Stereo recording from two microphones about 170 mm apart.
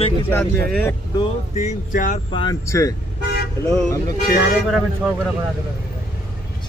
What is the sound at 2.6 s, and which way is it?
Speech, 20° left (ahead or behind).